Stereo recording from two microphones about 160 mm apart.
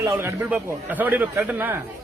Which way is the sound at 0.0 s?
15° right (ahead or behind).